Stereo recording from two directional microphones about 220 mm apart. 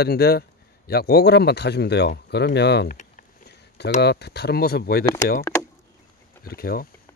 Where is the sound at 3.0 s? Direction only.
40° left (ahead or behind).